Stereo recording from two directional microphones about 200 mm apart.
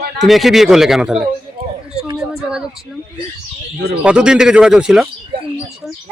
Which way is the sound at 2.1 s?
5° right (ahead or behind).